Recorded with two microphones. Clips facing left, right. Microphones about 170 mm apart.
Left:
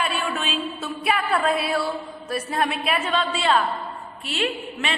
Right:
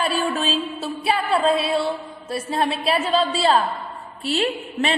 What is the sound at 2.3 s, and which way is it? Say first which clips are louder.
A woman's voice: right 2 dB; 30° right (ahead or behind).